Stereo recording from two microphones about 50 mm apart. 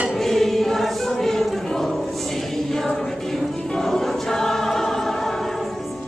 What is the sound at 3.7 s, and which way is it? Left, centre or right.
Choir, centre.